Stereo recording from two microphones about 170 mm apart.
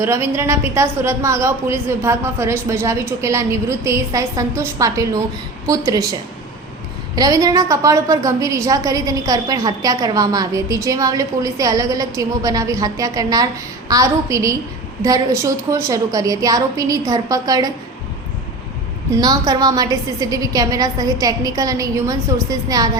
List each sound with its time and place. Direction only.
0.0 s a woman's voice: 15° right (ahead or behind)
7.2 s a woman's voice: 20° right (ahead or behind)
19.1 s a woman's voice: 20° right (ahead or behind)